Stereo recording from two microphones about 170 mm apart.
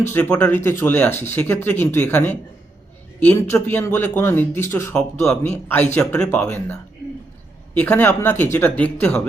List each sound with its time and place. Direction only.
0.1 s speech: 10° left (ahead or behind)
5.2 s a man's voice: 5° left (ahead or behind)